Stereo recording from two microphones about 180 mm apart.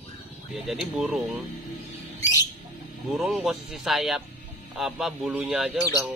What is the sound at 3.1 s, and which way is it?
Speech, 5° right (ahead or behind).